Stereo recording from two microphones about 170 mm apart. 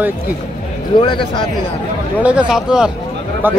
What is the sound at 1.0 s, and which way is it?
Speech, 25° left (ahead or behind).